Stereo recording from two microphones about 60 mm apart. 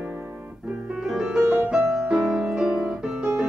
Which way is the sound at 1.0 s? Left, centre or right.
Centre.